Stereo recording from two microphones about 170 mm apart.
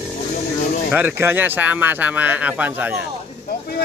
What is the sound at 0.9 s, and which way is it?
Speech, 10° right (ahead or behind).